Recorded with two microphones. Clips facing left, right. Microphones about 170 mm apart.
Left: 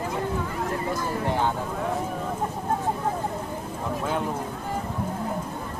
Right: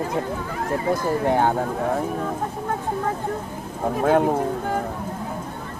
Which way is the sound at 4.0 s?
60° right (ahead or behind).